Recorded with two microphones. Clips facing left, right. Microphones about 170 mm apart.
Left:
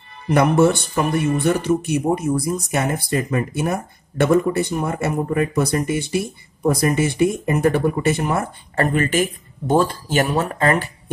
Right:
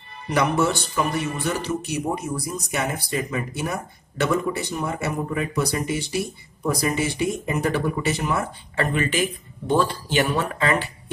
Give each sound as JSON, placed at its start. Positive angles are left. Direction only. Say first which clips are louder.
{"t": 0.3, "sound": "speech", "louder": "left 6 dB", "side_deg": 50}